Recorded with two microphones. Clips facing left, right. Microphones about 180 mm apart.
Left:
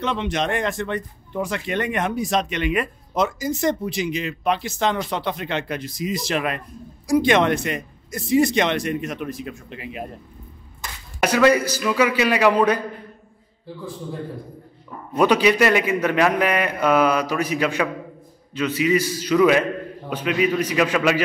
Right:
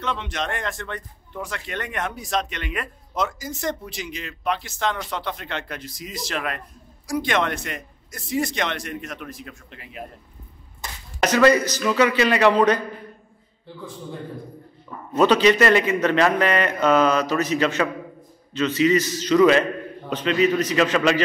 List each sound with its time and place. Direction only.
0.0 s speech: 20° left (ahead or behind)
11.1 s speech: 10° left (ahead or behind)
15.1 s speech: 10° left (ahead or behind)